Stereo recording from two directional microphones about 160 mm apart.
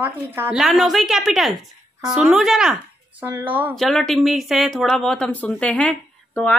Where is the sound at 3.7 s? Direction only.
Centre (ahead or behind).